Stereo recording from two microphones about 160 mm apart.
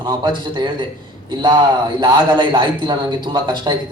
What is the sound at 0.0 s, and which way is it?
A man's voice, 25° right (ahead or behind).